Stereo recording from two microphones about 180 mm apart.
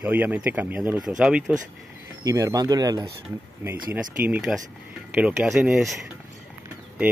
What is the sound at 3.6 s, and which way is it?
Speech, 10° right (ahead or behind).